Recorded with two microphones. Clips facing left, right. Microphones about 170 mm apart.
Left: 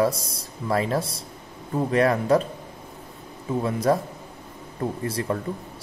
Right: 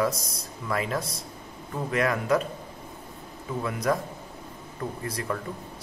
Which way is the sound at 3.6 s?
30° left (ahead or behind).